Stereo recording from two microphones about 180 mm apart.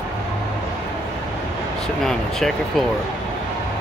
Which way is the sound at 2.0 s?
Centre (ahead or behind).